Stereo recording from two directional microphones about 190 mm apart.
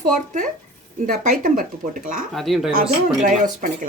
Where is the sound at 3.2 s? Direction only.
45° right (ahead or behind).